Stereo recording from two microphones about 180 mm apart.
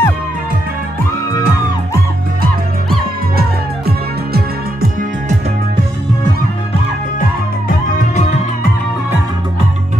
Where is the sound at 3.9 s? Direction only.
55° right (ahead or behind).